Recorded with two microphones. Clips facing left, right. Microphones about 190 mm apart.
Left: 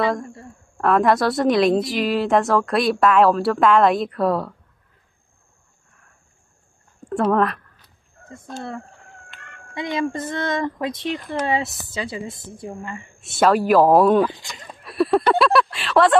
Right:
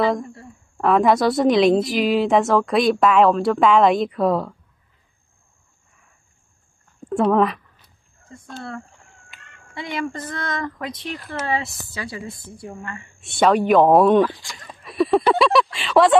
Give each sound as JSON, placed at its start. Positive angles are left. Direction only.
{"t": 0.0, "sound": "a woman's voice", "side_deg": 0}
{"t": 7.1, "sound": "speech", "side_deg": 0}
{"t": 9.3, "sound": "a sound", "side_deg": 0}
{"t": 9.8, "sound": "a woman's voice", "side_deg": 20}
{"t": 11.1, "sound": "a woman's voice", "side_deg": 0}
{"t": 11.3, "sound": "a woman's voice", "side_deg": 25}
{"t": 12.9, "sound": "a woman's voice", "side_deg": 0}